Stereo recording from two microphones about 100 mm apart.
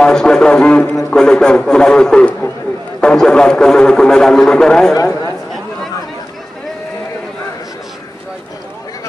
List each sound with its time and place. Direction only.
0.0 s speech: 5° left (ahead or behind)
4.9 s speech: 35° left (ahead or behind)